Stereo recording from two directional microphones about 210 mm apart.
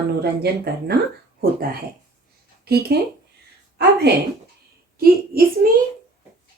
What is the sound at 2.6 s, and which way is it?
Speech, 50° right (ahead or behind).